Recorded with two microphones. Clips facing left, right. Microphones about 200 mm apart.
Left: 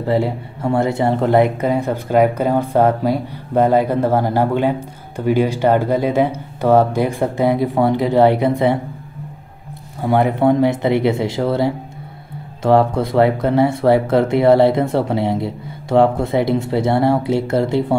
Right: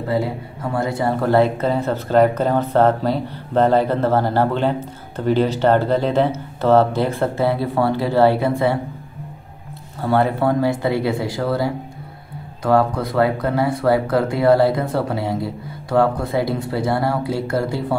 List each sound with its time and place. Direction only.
0.1 s speech: 25° left (ahead or behind)
10.0 s speech: 15° left (ahead or behind)